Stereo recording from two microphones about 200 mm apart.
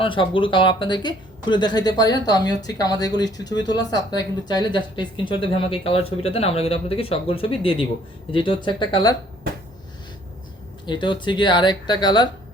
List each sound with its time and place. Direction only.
0.0 s a woman's voice: 25° left (ahead or behind)
10.8 s a woman's voice: 25° left (ahead or behind)